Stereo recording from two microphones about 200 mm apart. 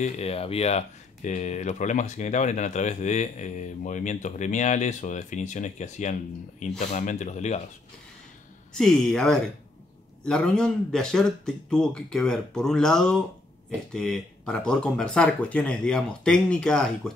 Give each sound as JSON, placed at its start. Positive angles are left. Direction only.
{"t": 0.0, "sound": "speech", "side_deg": 30}
{"t": 8.7, "sound": "speech", "side_deg": 0}